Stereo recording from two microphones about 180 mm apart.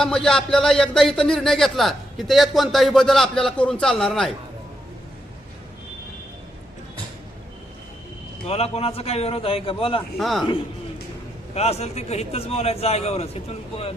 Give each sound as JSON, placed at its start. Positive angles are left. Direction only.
{"t": 0.0, "sound": "speech", "side_deg": 5}
{"t": 8.4, "sound": "a man's voice", "side_deg": 35}
{"t": 10.2, "sound": "speech", "side_deg": 0}
{"t": 11.5, "sound": "a man's voice", "side_deg": 35}